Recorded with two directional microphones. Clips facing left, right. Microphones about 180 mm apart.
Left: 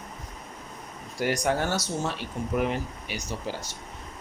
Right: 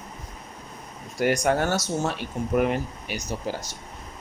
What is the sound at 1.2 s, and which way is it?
Speech, 50° right (ahead or behind).